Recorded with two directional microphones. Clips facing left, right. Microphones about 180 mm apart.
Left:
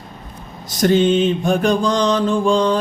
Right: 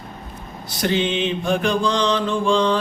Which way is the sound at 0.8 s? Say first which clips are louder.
Left 7 dB; 45° left (ahead or behind).